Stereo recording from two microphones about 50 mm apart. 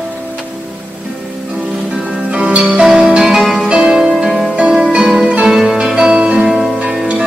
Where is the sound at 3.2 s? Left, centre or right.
Centre.